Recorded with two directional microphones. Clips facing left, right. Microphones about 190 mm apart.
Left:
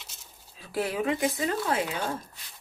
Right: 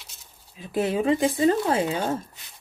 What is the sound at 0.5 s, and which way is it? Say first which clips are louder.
Speech: right 5 dB; 25° right (ahead or behind).